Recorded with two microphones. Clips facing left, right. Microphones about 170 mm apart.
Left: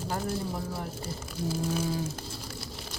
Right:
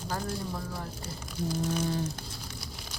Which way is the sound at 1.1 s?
5° left (ahead or behind).